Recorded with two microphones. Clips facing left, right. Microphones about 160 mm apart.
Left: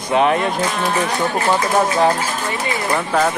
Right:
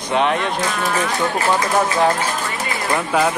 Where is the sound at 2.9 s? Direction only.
10° right (ahead or behind).